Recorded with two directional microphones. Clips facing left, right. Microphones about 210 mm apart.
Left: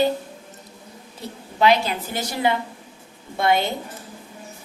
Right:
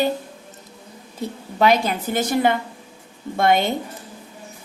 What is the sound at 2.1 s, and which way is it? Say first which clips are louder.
A woman's voice: right 4 dB; 50° right (ahead or behind).